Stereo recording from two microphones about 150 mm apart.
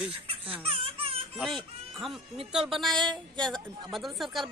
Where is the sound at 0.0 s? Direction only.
40° right (ahead or behind).